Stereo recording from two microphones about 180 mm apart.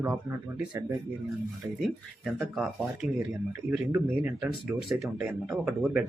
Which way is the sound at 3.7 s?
10° right (ahead or behind).